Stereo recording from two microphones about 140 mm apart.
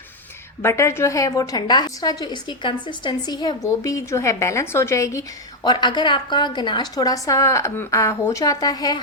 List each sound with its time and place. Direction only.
0.6 s a woman's voice: 20° left (ahead or behind)
5.6 s a woman's voice: 30° left (ahead or behind)